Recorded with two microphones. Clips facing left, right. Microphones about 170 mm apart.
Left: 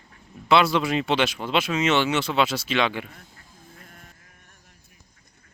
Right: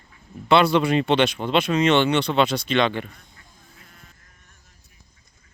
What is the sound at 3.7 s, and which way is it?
Music, 50° left (ahead or behind).